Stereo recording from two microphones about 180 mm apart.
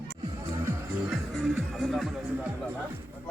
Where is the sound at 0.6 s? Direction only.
5° right (ahead or behind).